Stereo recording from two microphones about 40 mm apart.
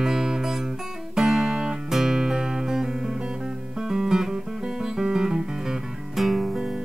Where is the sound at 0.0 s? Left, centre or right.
Centre.